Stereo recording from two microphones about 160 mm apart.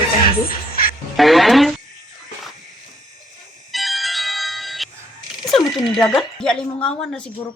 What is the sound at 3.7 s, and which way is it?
Music, centre (ahead or behind).